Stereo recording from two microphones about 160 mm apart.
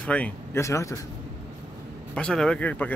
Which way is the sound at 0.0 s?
10° left (ahead or behind).